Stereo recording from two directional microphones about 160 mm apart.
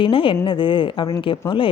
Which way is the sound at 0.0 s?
35° left (ahead or behind).